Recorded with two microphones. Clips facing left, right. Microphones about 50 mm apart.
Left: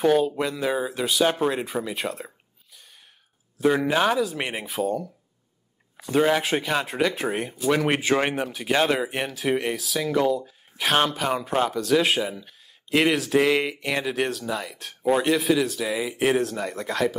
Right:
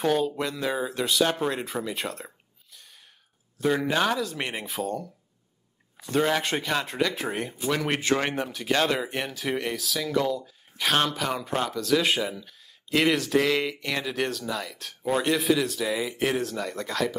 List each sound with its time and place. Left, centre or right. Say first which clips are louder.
0.0 s speech: left 4 dB; centre
9.9 s speech: left 4 dB; centre